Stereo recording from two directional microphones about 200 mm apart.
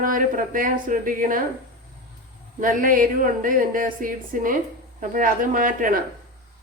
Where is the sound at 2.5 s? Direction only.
45° right (ahead or behind).